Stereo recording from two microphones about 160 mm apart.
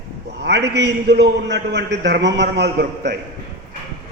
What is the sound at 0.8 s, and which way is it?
A man's voice, 90° right.